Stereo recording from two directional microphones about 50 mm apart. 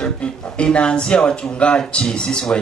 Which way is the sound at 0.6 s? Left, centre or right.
Centre.